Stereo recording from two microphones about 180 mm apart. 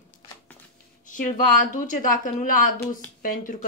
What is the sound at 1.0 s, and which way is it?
A woman's voice, 45° left (ahead or behind).